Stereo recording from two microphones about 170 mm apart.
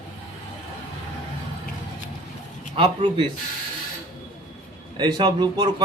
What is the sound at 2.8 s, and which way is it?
Speech, 30° right (ahead or behind).